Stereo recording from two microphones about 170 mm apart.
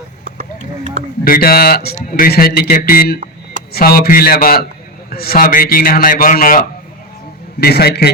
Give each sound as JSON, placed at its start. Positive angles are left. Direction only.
{"t": 1.2, "sound": "a man's voice", "side_deg": 60}
{"t": 2.0, "sound": "a man's voice", "side_deg": 55}
{"t": 7.6, "sound": "a man's voice", "side_deg": 70}